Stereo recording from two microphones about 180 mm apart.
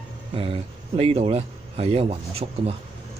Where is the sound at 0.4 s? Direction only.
30° right (ahead or behind).